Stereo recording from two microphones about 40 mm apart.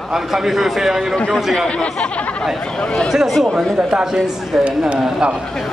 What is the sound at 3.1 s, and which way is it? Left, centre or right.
Speech, centre.